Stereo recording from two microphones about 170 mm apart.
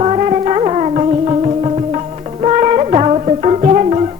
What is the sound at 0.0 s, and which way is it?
Music, 35° right (ahead or behind).